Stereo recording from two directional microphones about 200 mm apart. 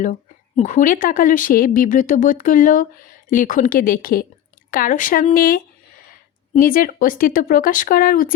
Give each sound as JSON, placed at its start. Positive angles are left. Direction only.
{"t": 0.0, "sound": "a woman's voice", "side_deg": 40}